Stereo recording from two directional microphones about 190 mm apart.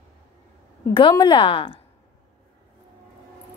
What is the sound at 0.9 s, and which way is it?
Speech, 25° left (ahead or behind).